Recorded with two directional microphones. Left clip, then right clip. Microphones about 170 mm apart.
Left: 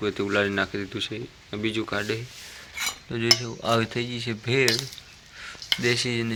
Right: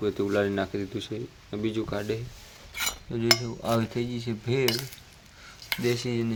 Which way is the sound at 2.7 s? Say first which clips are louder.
Left 1 dB; 90° right.